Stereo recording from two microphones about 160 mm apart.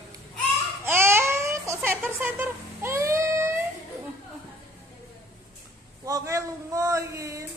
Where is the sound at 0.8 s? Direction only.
15° right (ahead or behind).